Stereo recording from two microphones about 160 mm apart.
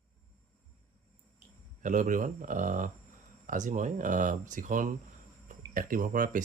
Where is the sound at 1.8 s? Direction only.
50° right (ahead or behind).